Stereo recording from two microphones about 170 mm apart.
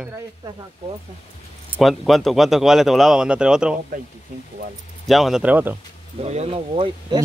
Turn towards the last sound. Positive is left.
turn(degrees=-30)  # may be behind; listen again after turning